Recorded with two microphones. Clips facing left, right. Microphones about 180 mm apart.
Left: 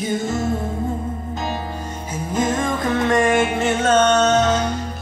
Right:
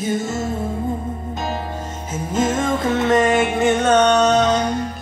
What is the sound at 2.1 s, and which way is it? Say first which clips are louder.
Music: right 1 dB; 25° right (ahead or behind).